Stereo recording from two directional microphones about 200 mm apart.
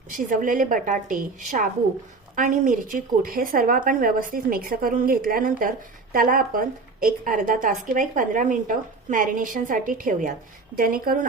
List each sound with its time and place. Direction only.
0.2 s a woman's voice: 40° right (ahead or behind)